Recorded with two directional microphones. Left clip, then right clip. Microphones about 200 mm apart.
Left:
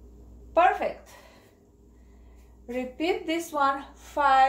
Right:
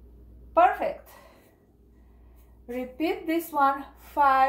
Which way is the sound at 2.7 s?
10° left (ahead or behind).